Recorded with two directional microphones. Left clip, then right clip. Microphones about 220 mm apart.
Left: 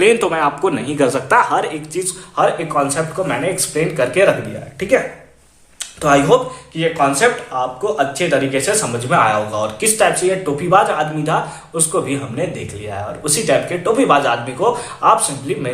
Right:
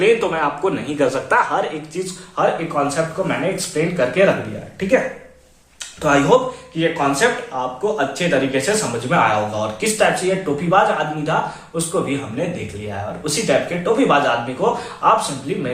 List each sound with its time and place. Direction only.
0.0 s speech: 45° left (ahead or behind)
6.0 s speech: 35° left (ahead or behind)
12.4 s speech: 40° left (ahead or behind)